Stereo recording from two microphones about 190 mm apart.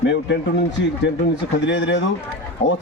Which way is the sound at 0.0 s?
65° left (ahead or behind).